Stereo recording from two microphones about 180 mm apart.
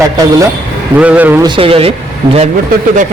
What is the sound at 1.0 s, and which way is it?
Speech, 10° right (ahead or behind).